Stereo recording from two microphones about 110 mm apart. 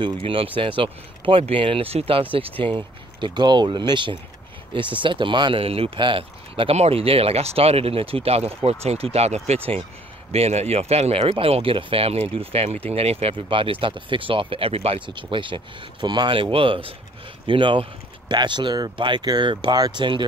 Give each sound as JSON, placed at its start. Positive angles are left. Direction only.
{"t": 0.0, "sound": "speech", "side_deg": -55}
{"t": 2.6, "sound": "speech", "side_deg": -45}
{"t": 15.0, "sound": "speech", "side_deg": -50}